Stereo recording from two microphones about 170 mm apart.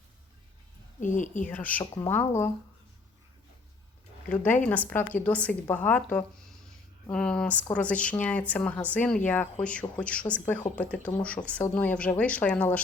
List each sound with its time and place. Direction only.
0.9 s speech: 45° left (ahead or behind)
1.5 s speech: 10° left (ahead or behind)
4.3 s speech: 5° left (ahead or behind)